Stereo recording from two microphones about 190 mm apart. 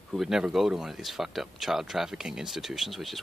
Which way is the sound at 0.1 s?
Centre (ahead or behind).